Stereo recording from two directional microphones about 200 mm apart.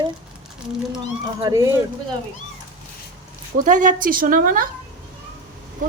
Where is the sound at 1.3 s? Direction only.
20° right (ahead or behind).